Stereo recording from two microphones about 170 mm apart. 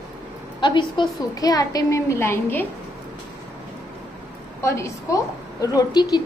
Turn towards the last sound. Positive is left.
turn(degrees=25)  # may be behind; listen again after turning